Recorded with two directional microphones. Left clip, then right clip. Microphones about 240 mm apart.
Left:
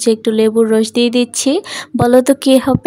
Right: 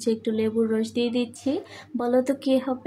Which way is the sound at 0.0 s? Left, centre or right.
Left.